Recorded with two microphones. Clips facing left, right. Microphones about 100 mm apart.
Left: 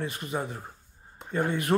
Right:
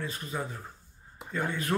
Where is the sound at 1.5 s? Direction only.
20° left (ahead or behind).